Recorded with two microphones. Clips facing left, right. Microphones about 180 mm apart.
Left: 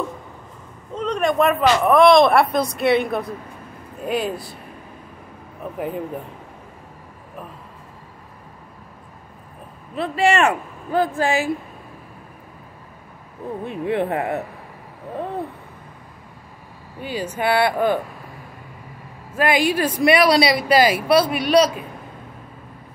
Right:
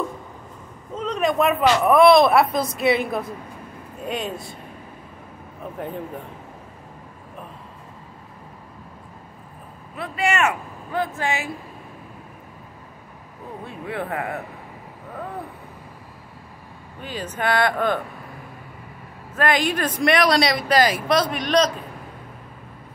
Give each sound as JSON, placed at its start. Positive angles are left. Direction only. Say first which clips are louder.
{"t": 0.9, "sound": "speech", "louder": "left 2 dB", "side_deg": 0}
{"t": 9.9, "sound": "speech", "louder": "left 5 dB", "side_deg": 30}
{"t": 13.7, "sound": "speech", "louder": "left 7 dB", "side_deg": 20}
{"t": 17.0, "sound": "speech", "louder": "left 3 dB", "side_deg": 10}
{"t": 19.3, "sound": "speech", "louder": "left 3 dB", "side_deg": 10}